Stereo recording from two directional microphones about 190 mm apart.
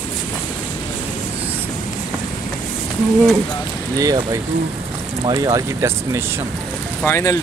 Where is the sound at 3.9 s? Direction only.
20° right (ahead or behind).